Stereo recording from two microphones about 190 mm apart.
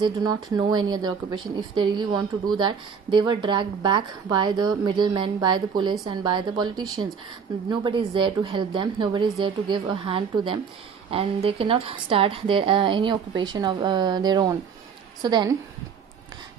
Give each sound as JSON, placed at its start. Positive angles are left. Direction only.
{"t": 0.0, "sound": "speech", "side_deg": -20}